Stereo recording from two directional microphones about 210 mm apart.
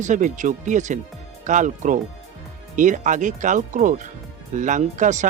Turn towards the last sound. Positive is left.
turn(degrees=-35)  # may be behind; listen again after turning